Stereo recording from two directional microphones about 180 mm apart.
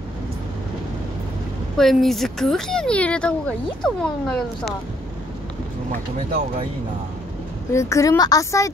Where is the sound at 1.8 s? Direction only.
Centre (ahead or behind).